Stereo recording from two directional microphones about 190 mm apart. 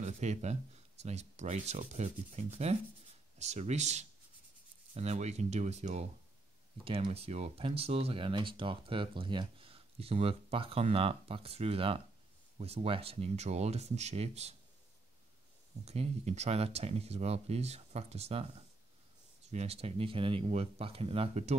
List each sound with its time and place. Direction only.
0.0 s speech: 35° right (ahead or behind)
15.8 s speech: 35° right (ahead or behind)
19.5 s speech: 35° right (ahead or behind)